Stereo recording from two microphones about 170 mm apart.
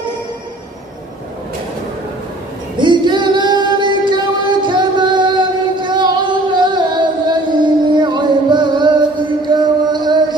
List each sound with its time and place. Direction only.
2.8 s music: 25° right (ahead or behind)